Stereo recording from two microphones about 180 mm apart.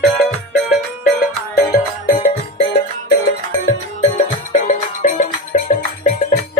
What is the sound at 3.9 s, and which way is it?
Music, 35° left (ahead or behind).